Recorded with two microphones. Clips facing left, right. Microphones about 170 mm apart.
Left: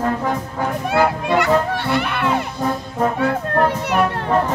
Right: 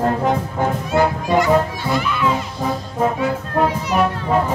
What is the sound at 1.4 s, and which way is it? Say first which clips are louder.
Children playing: right 2 dB; 65° left (ahead or behind).